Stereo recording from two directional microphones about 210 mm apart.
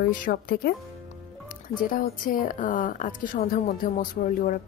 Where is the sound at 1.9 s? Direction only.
40° left (ahead or behind).